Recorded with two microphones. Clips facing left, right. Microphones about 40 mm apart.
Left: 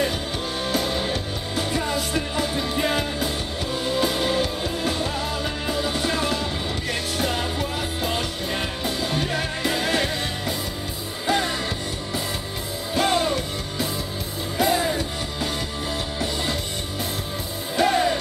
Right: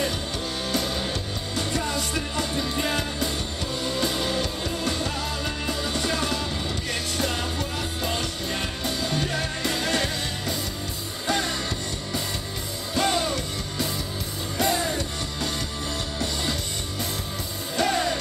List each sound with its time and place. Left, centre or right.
0.7 s music: centre
12.9 s music: centre
17.7 s music: centre